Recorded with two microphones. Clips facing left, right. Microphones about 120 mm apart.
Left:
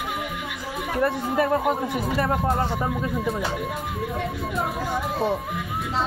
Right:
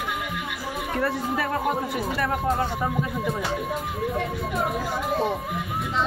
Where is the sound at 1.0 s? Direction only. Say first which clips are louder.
Left 5 dB; 25° left (ahead or behind).